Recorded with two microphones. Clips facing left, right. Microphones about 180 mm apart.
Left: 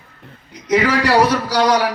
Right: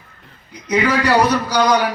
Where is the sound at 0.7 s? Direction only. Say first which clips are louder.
Left 1 dB; 90° left.